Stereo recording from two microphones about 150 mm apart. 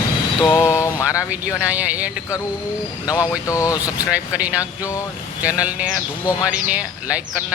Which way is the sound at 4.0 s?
10° right (ahead or behind).